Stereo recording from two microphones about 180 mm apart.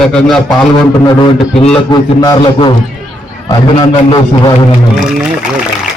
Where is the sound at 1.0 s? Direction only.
25° left (ahead or behind).